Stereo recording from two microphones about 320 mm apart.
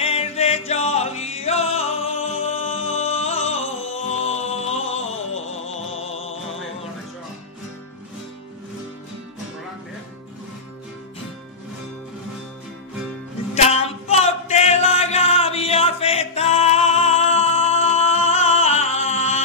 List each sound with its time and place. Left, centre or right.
0.0 s music: centre
13.6 s music: centre